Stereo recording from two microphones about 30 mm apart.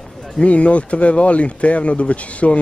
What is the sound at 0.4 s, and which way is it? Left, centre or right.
Speech, left.